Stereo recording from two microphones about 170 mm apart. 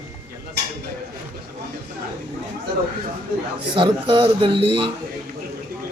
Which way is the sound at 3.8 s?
30° right (ahead or behind).